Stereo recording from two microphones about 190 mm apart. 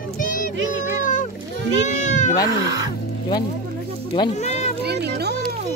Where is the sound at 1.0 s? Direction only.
40° left (ahead or behind).